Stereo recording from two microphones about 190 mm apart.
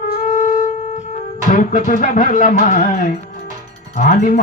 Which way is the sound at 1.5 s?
45° left (ahead or behind).